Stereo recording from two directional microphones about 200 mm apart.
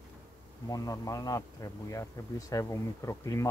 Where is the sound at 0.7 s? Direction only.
15° left (ahead or behind).